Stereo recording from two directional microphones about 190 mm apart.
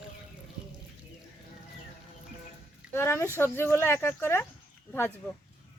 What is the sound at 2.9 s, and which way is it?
Speech, 15° left (ahead or behind).